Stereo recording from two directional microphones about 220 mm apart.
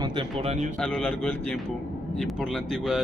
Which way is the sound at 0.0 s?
20° right (ahead or behind).